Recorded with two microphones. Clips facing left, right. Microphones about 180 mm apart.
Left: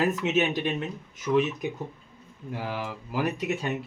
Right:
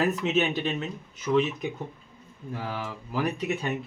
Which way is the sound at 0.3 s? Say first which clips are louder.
Even; 10° left (ahead or behind).